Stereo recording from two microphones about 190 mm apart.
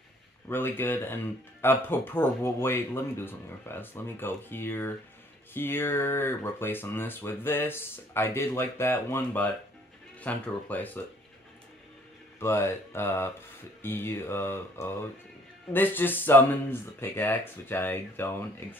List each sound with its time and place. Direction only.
0.5 s speech: 10° left (ahead or behind)
12.4 s speech: 15° left (ahead or behind)